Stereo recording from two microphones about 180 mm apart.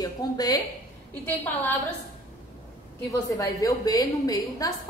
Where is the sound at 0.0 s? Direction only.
20° left (ahead or behind).